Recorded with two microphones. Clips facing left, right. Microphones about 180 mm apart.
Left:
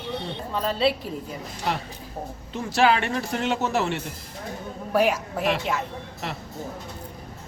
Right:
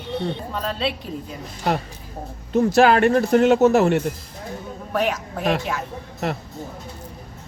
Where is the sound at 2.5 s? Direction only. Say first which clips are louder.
Right 6 dB; 50° right (ahead or behind).